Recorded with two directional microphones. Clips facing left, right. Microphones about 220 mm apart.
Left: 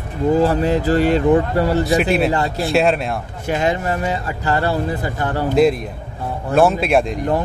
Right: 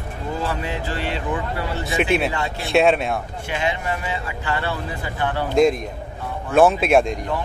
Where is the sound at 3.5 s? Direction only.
40° left (ahead or behind).